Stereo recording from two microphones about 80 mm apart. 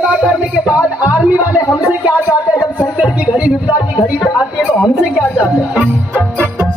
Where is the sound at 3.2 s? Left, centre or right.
Centre.